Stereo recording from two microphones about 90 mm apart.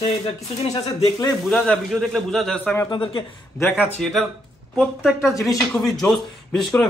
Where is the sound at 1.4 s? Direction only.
10° left (ahead or behind).